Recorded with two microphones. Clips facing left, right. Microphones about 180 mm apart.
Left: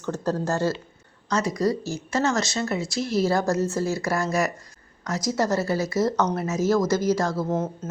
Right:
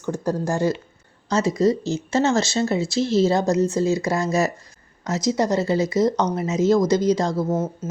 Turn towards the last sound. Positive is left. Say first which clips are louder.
# right 3 dB
turn(degrees=-15)  # may be behind; listen again after turning